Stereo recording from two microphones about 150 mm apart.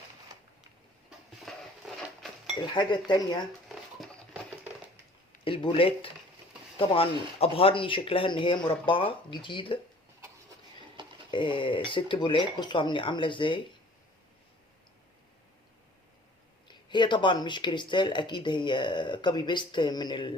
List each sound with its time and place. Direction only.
1.5 s dishes: centre (ahead or behind)
2.7 s cutlery: 30° left (ahead or behind)
5.5 s speech: 35° left (ahead or behind)
11.3 s speech: 30° left (ahead or behind)
16.6 s speech: 30° left (ahead or behind)